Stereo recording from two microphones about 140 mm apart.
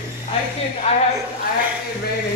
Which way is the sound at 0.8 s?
50° left (ahead or behind).